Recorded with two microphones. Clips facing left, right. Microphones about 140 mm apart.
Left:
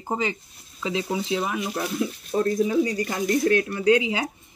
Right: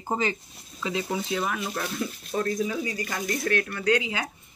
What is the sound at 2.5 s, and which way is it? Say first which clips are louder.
Speech: left 6 dB; 35° left (ahead or behind).